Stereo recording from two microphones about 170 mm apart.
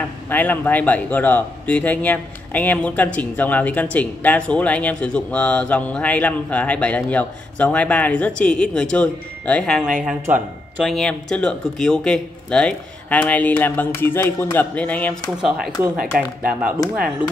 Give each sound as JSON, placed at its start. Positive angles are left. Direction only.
{"t": 0.3, "sound": "a man's voice", "side_deg": 10}
{"t": 16.1, "sound": "speech", "side_deg": -60}